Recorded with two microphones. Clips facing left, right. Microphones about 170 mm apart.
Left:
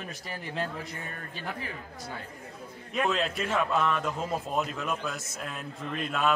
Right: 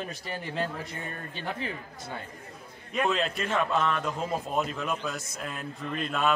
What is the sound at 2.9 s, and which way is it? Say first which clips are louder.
A man's voice: right 1 dB; centre (ahead or behind).